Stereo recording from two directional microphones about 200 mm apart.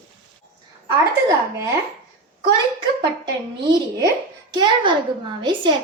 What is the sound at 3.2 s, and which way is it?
A woman's voice, 25° right (ahead or behind).